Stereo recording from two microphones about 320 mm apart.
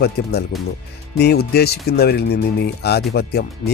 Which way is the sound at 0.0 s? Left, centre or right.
Left.